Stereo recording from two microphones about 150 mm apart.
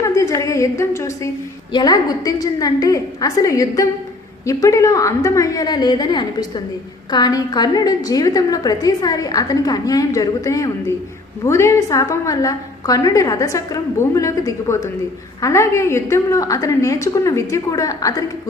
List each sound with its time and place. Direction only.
0.0 s a woman's voice: 20° left (ahead or behind)